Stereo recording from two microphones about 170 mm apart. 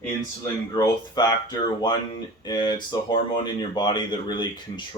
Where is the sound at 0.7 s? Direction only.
20° left (ahead or behind).